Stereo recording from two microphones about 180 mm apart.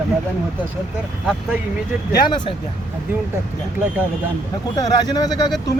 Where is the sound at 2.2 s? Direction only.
25° left (ahead or behind).